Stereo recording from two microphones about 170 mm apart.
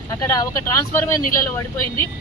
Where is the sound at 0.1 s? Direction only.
20° left (ahead or behind).